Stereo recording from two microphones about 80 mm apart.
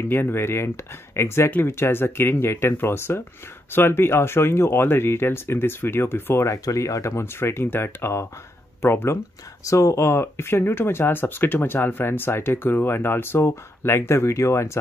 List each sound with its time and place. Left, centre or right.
0.0 s speech: left